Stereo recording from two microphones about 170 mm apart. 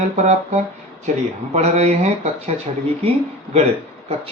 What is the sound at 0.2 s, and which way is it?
Speech, 40° right (ahead or behind).